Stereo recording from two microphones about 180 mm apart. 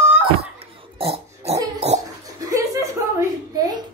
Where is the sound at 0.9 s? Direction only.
35° right (ahead or behind).